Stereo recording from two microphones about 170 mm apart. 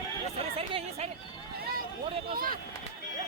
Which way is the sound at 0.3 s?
35° right (ahead or behind).